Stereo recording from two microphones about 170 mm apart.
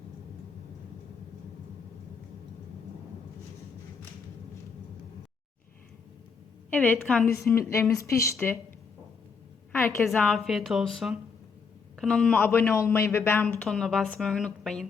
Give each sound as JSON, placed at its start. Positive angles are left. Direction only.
{"t": 6.7, "sound": "a man's voice", "side_deg": 10}
{"t": 9.7, "sound": "a woman's voice", "side_deg": 10}
{"t": 13.7, "sound": "a woman's voice", "side_deg": 0}